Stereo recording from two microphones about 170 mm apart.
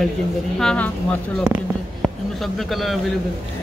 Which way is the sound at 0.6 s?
5° left (ahead or behind).